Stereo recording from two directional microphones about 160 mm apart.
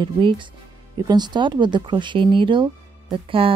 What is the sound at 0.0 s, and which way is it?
Speech, 30° right (ahead or behind).